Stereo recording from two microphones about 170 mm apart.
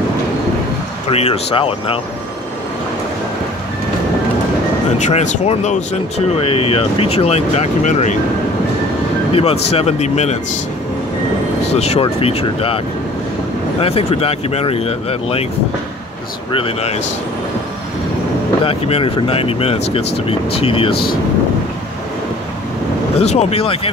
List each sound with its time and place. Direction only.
1.1 s speech: 35° left (ahead or behind)
4.9 s speech: 45° left (ahead or behind)
9.3 s speech: 35° left (ahead or behind)
11.7 s speech: 35° left (ahead or behind)
16.5 s speech: 35° left (ahead or behind)
18.6 s speech: 35° left (ahead or behind)
20.9 s speech: 65° left (ahead or behind)
23.1 s speech: 40° left (ahead or behind)